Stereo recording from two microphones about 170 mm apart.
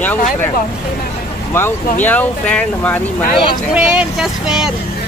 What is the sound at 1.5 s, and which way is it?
Speech, 15° left (ahead or behind).